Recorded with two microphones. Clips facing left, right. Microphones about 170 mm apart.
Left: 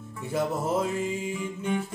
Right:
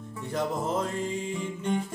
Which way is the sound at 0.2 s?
5° left (ahead or behind).